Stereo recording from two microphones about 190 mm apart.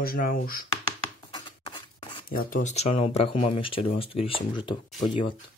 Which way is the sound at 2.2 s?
50° left (ahead or behind).